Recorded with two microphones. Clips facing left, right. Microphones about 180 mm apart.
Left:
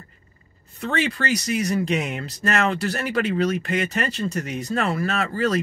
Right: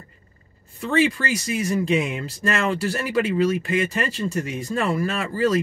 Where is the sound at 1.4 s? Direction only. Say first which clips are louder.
Right 2 dB; 40° left (ahead or behind).